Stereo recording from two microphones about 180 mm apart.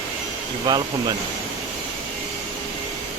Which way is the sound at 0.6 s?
25° right (ahead or behind).